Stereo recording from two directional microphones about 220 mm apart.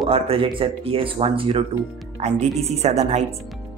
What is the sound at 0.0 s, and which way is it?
Speech, 25° right (ahead or behind).